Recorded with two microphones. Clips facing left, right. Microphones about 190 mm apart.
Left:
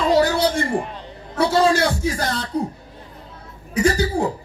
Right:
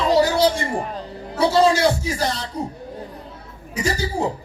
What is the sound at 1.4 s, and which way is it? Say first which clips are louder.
A man's voice: right 1 dB; 55° left (ahead or behind).